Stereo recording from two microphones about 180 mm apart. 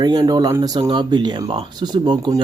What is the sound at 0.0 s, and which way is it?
Speech, 25° right (ahead or behind).